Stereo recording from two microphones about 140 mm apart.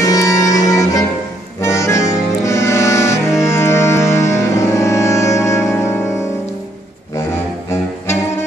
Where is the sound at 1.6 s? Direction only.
20° left (ahead or behind).